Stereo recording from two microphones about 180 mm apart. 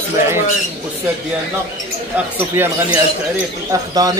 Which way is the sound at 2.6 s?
10° right (ahead or behind).